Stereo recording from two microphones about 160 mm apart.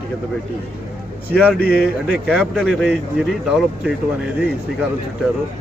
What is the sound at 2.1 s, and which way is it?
Speech, 5° right (ahead or behind).